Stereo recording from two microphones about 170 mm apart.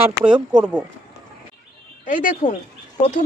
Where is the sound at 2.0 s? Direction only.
50° left (ahead or behind).